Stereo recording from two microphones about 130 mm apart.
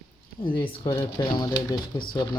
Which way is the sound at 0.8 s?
40° left (ahead or behind).